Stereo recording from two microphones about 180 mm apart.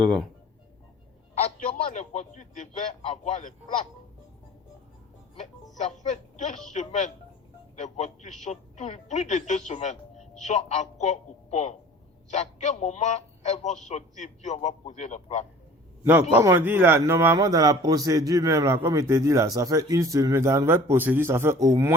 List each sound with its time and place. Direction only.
0.0 s speech: 5° left (ahead or behind)
1.4 s a man's voice: 40° left (ahead or behind)
5.7 s a woman's voice: 40° left (ahead or behind)
16.3 s a man's voice: 15° right (ahead or behind)